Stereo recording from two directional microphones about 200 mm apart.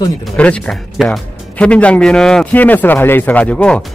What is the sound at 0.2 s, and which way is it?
Speech, 5° left (ahead or behind).